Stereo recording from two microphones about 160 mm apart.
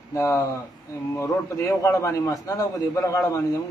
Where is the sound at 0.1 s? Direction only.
20° left (ahead or behind).